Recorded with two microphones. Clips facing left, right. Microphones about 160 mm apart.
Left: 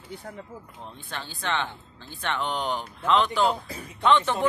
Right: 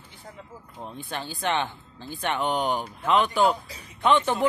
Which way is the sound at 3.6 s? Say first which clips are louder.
Left 6 dB; 55° left (ahead or behind).